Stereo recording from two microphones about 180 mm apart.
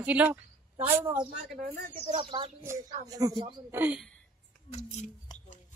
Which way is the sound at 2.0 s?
35° right (ahead or behind).